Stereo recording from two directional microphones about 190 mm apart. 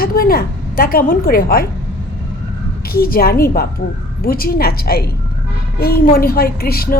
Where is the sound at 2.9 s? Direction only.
50° left (ahead or behind).